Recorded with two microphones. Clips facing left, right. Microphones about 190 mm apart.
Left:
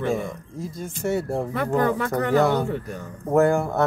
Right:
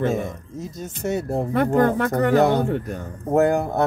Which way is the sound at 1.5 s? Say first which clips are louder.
Right 5 dB; 55° right (ahead or behind).